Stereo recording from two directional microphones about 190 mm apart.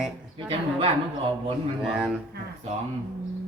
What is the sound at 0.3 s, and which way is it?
Speech, 30° right (ahead or behind).